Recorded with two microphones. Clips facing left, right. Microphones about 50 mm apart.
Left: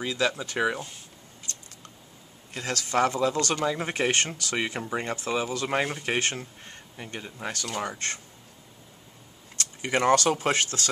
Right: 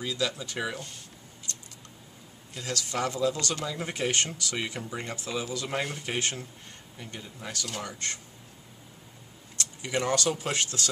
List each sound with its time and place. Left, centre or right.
0.0 s speech: left
2.5 s speech: left
9.6 s speech: left